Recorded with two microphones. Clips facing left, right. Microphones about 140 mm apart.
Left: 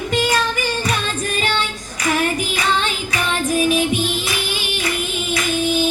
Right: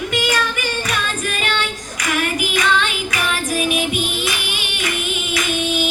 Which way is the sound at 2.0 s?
30° left (ahead or behind).